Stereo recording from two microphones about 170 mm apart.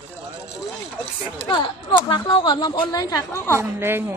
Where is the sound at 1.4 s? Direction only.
30° left (ahead or behind).